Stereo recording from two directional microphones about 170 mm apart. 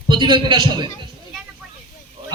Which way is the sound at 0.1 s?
25° right (ahead or behind).